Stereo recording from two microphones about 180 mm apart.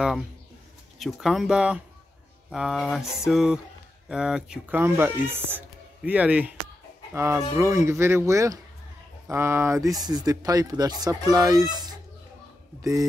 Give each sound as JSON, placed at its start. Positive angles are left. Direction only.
{"t": 0.9, "sound": "speech", "side_deg": 0}